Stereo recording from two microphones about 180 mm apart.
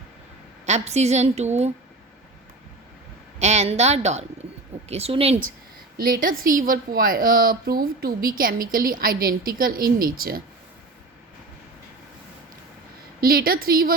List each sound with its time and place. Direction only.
0.6 s a woman's voice: 40° right (ahead or behind)
3.4 s a woman's voice: 35° right (ahead or behind)
6.0 s a woman's voice: 50° right (ahead or behind)
13.2 s a woman's voice: 55° right (ahead or behind)